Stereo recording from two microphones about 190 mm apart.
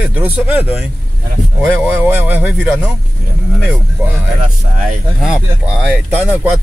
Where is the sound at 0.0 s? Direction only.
10° right (ahead or behind).